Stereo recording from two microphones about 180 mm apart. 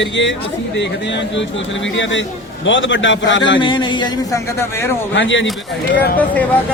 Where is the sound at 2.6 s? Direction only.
90° left.